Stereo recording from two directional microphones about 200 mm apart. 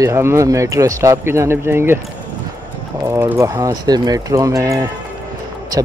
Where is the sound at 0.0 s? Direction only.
15° right (ahead or behind).